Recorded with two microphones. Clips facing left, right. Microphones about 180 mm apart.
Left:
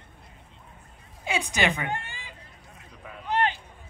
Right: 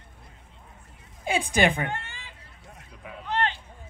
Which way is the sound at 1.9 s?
15° left (ahead or behind).